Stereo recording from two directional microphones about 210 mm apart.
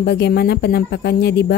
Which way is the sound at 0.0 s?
50° left (ahead or behind).